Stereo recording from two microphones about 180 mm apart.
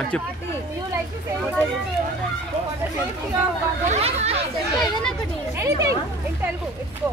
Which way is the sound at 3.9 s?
35° right (ahead or behind).